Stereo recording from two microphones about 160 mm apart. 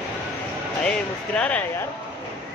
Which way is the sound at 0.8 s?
5° left (ahead or behind).